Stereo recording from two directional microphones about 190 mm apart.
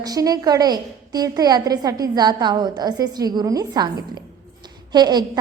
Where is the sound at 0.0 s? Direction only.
20° right (ahead or behind).